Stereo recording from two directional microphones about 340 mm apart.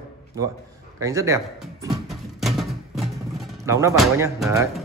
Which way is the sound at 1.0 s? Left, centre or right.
Centre.